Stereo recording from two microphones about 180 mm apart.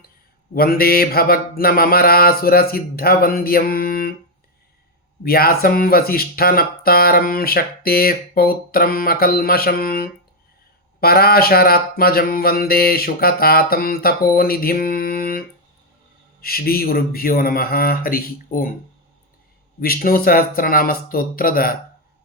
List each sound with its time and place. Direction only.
0.5 s speech: 55° left (ahead or behind)
5.2 s speech: 55° left (ahead or behind)
19.8 s speech: 55° left (ahead or behind)